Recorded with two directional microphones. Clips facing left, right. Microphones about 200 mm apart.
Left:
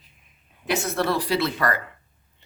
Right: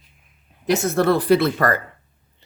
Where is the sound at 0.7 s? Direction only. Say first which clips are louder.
Right 6 dB; 50° right (ahead or behind).